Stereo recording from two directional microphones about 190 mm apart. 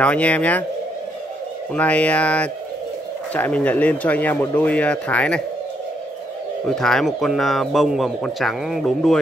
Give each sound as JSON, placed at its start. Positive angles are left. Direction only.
{"t": 0.0, "sound": "speech", "side_deg": 5}
{"t": 1.7, "sound": "speech", "side_deg": 5}
{"t": 6.6, "sound": "a man's voice", "side_deg": 5}